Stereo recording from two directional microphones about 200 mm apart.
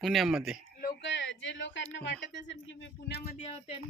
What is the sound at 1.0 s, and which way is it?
Speech, 65° left (ahead or behind).